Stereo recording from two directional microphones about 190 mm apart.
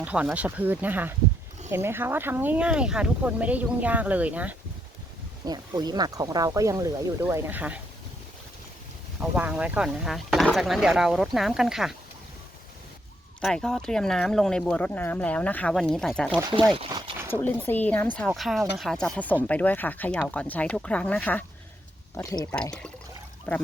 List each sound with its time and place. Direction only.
0.0 s speech: 5° right (ahead or behind)
5.5 s speech: 20° right (ahead or behind)
9.3 s speech: 5° right (ahead or behind)
13.4 s speech: 5° left (ahead or behind)
16.7 s a sound: 30° right (ahead or behind)
17.4 s speech: 10° left (ahead or behind)
23.5 s speech: 10° left (ahead or behind)